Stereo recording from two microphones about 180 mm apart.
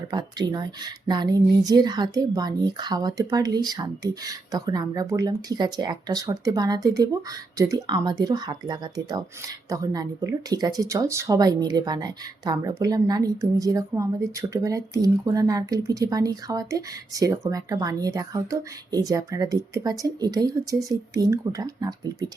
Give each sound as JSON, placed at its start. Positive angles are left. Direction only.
{"t": 0.1, "sound": "speech", "side_deg": -25}